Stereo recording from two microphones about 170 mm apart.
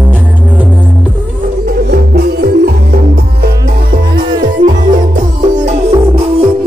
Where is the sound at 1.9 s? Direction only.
70° right (ahead or behind).